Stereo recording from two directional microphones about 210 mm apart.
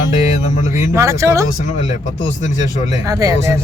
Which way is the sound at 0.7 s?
15° right (ahead or behind).